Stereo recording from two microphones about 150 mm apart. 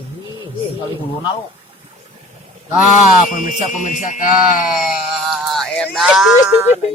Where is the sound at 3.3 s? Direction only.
55° left (ahead or behind).